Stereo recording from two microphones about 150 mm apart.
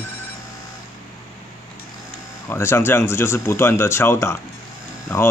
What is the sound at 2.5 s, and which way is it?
Speech, 15° left (ahead or behind).